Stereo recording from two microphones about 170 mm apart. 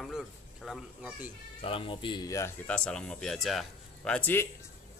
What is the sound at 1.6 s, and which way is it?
Speech, 30° left (ahead or behind).